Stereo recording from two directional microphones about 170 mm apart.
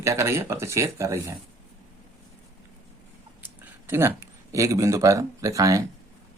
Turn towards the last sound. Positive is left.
turn(degrees=-20)  # may be behind; listen again after turning